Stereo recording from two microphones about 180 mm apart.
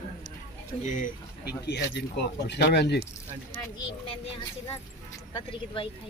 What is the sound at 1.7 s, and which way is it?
Speech, 70° left (ahead or behind).